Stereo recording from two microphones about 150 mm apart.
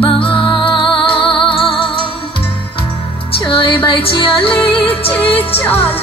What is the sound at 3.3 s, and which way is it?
Music, 35° left (ahead or behind).